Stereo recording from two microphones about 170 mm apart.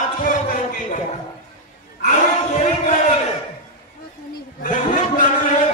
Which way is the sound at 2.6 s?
45° left (ahead or behind).